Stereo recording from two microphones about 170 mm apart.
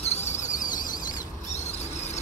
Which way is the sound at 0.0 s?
40° left (ahead or behind).